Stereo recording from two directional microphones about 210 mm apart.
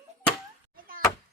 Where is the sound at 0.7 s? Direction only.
40° right (ahead or behind).